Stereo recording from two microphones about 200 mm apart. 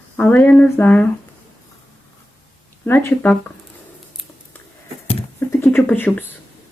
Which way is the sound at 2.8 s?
10° left (ahead or behind).